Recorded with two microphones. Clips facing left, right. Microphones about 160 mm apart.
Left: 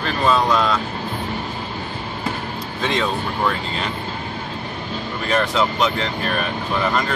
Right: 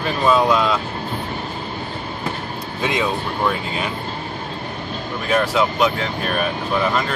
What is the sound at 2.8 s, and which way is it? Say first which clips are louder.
Speech: right 1 dB; 10° right (ahead or behind).